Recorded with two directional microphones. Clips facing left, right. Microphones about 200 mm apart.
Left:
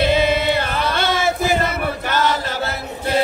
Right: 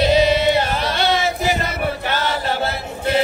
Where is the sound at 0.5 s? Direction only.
50° left (ahead or behind).